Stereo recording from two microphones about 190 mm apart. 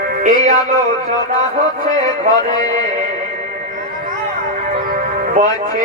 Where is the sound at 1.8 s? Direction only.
40° right (ahead or behind).